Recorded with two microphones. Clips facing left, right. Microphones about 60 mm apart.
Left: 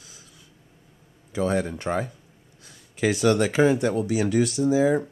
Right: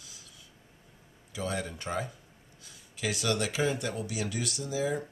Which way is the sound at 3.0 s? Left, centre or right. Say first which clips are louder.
Left 10 dB; left.